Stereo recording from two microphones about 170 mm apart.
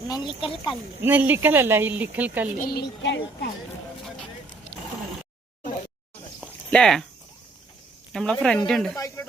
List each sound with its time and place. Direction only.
0.1 s speech: 25° left (ahead or behind)
0.7 s speech: 10° right (ahead or behind)
2.6 s speech: 65° left (ahead or behind)
6.7 s speech: 5° left (ahead or behind)
8.1 s speech: 5° left (ahead or behind)
9.0 s speech: 20° left (ahead or behind)